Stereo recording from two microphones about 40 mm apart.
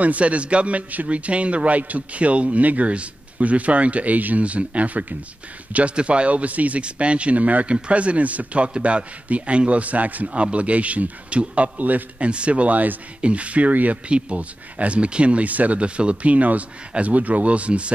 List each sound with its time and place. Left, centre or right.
0.0 s a man's voice: right
8.6 s a man's voice: right
10.2 s a man's voice: right
12.2 s a man's voice: right